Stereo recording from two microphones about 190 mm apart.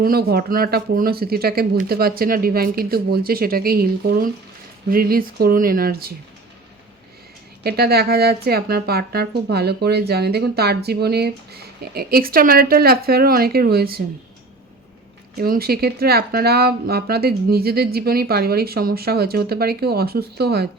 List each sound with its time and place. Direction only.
0.0 s speech: 55° right (ahead or behind)
7.6 s speech: 55° right (ahead or behind)
15.4 s speech: 50° right (ahead or behind)